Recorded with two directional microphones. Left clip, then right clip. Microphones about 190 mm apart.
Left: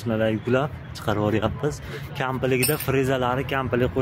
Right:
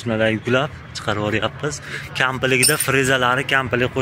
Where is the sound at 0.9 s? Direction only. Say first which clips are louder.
Right 2 dB; 15° left (ahead or behind).